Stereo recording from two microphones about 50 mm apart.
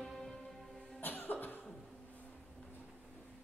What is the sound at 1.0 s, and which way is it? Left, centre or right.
Cough, left.